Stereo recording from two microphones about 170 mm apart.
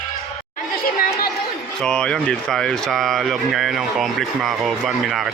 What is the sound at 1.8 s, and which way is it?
Speech, 5° left (ahead or behind).